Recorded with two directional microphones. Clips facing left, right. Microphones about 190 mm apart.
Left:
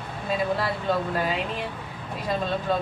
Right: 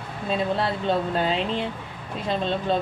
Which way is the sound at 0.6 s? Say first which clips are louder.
Right 2 dB; 25° right (ahead or behind).